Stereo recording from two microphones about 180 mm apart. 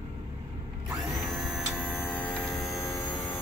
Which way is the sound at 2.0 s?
10° left (ahead or behind).